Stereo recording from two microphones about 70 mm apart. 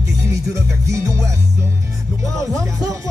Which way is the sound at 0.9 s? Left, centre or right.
Right.